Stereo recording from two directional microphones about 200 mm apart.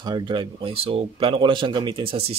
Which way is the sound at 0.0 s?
20° right (ahead or behind).